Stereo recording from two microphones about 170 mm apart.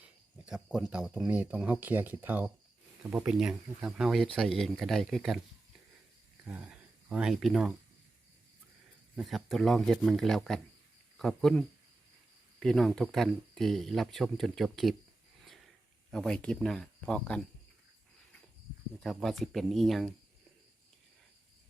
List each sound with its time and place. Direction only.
0.4 s speech: 5° right (ahead or behind)
6.5 s speech: 5° right (ahead or behind)
9.1 s speech: centre (ahead or behind)
16.1 s speech: 5° left (ahead or behind)
18.9 s speech: centre (ahead or behind)